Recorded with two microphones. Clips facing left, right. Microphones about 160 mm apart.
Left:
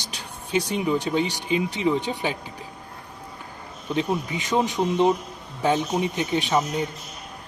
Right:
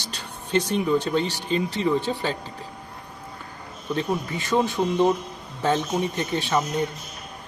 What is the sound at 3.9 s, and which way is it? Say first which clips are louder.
A man's voice: left 1 dB; 15° left (ahead or behind).